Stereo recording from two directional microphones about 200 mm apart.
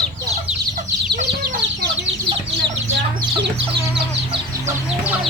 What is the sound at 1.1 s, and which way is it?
Chicken, 45° right (ahead or behind).